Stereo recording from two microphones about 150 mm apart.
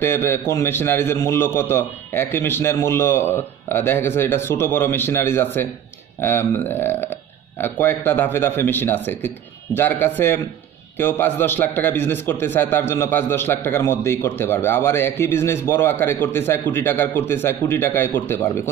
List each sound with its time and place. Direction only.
0.0 s a man's voice: 15° left (ahead or behind)